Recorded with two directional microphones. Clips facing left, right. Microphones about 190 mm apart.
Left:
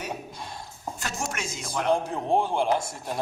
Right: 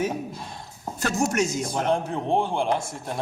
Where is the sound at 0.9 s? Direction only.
40° right (ahead or behind).